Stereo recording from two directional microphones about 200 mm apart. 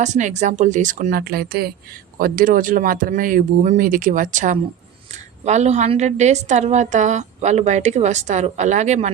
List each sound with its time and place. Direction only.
0.0 s a woman's voice: 35° right (ahead or behind)